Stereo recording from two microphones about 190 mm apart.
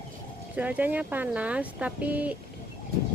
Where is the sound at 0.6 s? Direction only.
10° right (ahead or behind).